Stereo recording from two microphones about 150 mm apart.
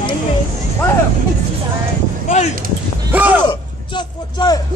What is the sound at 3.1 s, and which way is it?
Speech, 10° right (ahead or behind).